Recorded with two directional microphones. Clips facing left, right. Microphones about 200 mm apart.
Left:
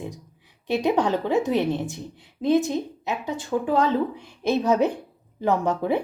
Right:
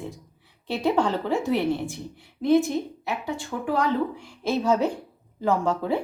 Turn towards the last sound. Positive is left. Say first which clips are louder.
# left 1 dB
turn(degrees=20)  # may be behind; listen again after turning